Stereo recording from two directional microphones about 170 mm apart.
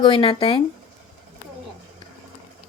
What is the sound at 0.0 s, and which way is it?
Speech, 30° left (ahead or behind).